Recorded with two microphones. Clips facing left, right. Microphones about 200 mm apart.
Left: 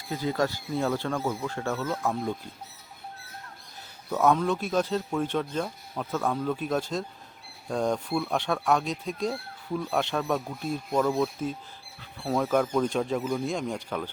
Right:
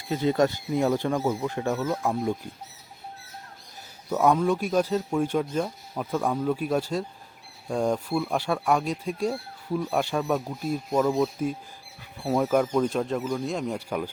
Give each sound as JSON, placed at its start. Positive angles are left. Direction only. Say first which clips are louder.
{"t": 0.1, "sound": "speech", "louder": "right 5 dB", "side_deg": -20}
{"t": 4.1, "sound": "speech", "louder": "right 2 dB", "side_deg": -10}